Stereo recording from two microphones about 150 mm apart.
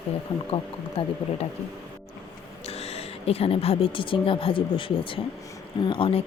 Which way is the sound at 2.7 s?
45° left (ahead or behind).